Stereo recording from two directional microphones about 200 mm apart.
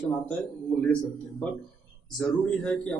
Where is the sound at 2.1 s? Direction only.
5° left (ahead or behind).